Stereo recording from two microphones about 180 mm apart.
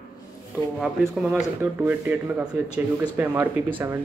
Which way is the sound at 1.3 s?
10° right (ahead or behind).